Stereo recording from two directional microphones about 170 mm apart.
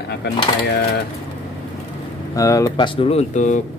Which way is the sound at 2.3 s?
20° left (ahead or behind).